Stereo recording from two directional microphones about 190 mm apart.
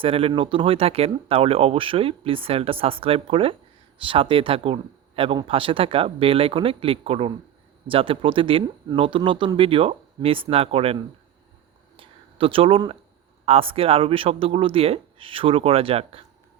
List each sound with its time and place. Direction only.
0.0 s speech: 30° right (ahead or behind)
11.9 s a sound: 30° right (ahead or behind)
13.4 s speech: 30° right (ahead or behind)